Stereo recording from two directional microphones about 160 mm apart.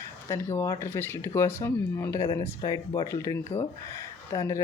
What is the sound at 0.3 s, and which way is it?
Speech, 15° left (ahead or behind).